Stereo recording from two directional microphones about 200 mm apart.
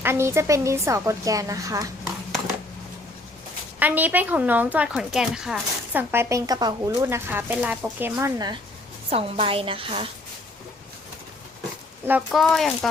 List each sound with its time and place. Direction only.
0.0 s speech: 15° right (ahead or behind)
3.8 s speech: 10° right (ahead or behind)
9.0 s a woman's voice: 30° right (ahead or behind)
12.0 s speech: 5° right (ahead or behind)